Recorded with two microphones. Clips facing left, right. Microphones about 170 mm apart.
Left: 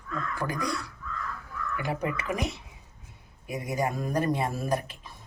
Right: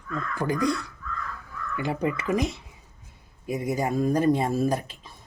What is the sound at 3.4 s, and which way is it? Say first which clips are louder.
Speech: right 3 dB; 30° right (ahead or behind).